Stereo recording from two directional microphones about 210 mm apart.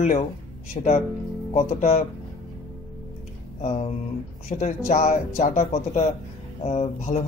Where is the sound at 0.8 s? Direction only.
30° left (ahead or behind).